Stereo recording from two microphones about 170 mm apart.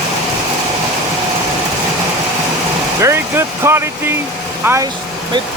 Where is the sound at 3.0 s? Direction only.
15° right (ahead or behind).